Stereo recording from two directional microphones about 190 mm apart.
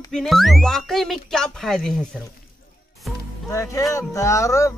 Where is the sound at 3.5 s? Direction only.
15° left (ahead or behind).